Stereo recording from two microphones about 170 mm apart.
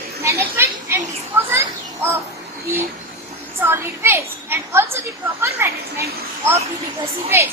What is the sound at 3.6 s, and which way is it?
A woman's voice, 15° right (ahead or behind).